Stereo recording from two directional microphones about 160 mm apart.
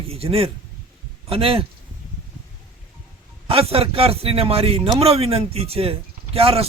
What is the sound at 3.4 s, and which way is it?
A man's voice, 35° right (ahead or behind).